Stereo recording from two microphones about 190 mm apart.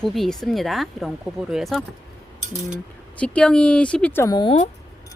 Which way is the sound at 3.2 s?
5° left (ahead or behind).